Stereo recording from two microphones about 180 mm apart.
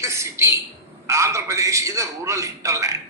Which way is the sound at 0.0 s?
15° right (ahead or behind).